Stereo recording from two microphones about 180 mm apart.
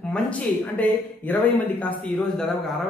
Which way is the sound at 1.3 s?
10° left (ahead or behind).